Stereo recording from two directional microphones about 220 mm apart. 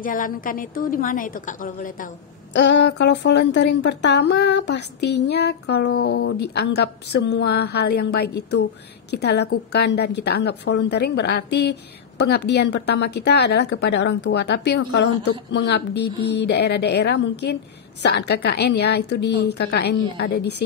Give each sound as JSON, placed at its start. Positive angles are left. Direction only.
{"t": 0.0, "sound": "a woman's voice", "side_deg": 40}
{"t": 2.5, "sound": "a woman's voice", "side_deg": 55}